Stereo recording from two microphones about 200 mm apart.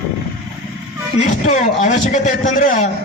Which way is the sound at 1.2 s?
40° left (ahead or behind).